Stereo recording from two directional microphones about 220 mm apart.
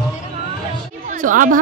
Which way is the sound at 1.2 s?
35° right (ahead or behind).